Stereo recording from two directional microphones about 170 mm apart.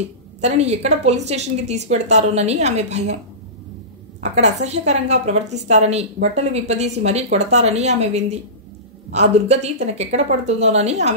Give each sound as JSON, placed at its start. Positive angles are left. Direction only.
{"t": 0.4, "sound": "a woman's voice", "side_deg": -40}
{"t": 4.2, "sound": "a woman's voice", "side_deg": -40}